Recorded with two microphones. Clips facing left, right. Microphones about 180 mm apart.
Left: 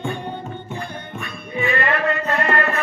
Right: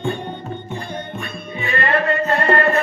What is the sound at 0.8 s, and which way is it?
Music, 30° right (ahead or behind).